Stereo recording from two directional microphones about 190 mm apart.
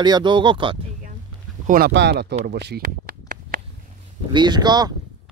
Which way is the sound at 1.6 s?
55° right (ahead or behind).